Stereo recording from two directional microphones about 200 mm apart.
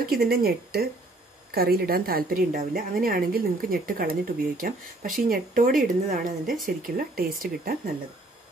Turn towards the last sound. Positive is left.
turn(degrees=-45)  # may be behind; listen again after turning